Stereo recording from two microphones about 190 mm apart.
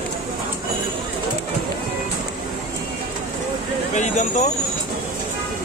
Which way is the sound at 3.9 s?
40° left (ahead or behind).